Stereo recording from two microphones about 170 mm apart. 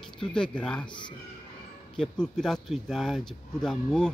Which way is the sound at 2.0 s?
5° left (ahead or behind).